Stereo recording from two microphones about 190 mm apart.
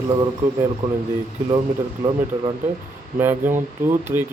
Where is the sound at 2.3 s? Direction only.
20° right (ahead or behind).